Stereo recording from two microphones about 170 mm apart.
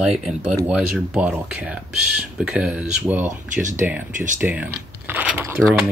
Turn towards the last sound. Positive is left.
turn(degrees=-15)  # may be behind; listen again after turning